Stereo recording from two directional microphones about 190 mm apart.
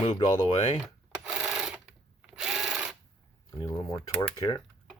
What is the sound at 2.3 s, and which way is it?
Tools, 5° right (ahead or behind).